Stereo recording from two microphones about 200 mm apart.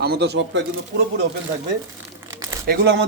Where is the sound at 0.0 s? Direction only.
55° right (ahead or behind).